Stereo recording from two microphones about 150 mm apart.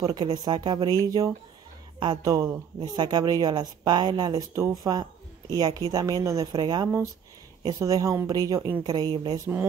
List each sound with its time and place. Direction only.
0.0 s a woman's voice: 25° right (ahead or behind)